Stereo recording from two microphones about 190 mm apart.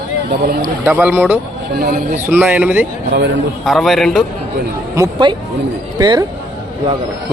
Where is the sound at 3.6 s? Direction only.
Centre (ahead or behind).